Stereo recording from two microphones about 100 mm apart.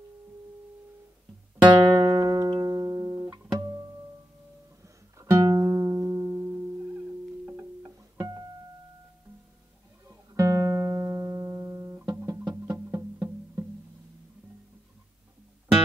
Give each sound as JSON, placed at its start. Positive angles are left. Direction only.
{"t": 1.7, "sound": "music", "side_deg": -50}
{"t": 5.2, "sound": "music", "side_deg": -35}
{"t": 10.0, "sound": "music", "side_deg": -30}
{"t": 12.1, "sound": "music", "side_deg": -40}
{"t": 12.7, "sound": "music", "side_deg": -25}